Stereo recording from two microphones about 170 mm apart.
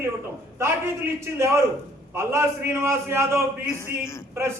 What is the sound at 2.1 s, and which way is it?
A man's voice, 15° right (ahead or behind).